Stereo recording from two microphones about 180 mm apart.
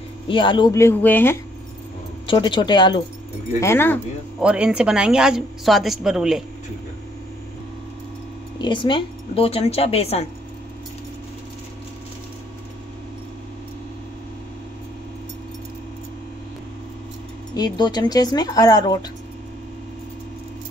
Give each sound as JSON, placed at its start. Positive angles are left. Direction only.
{"t": 0.3, "sound": "speech", "side_deg": 25}
{"t": 2.2, "sound": "speech", "side_deg": 25}
{"t": 3.6, "sound": "speech", "side_deg": 10}
{"t": 4.4, "sound": "a woman's voice", "side_deg": -5}
{"t": 8.5, "sound": "speech", "side_deg": 25}
{"t": 17.6, "sound": "speech", "side_deg": 25}